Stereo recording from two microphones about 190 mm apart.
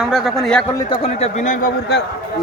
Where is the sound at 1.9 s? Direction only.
60° left (ahead or behind).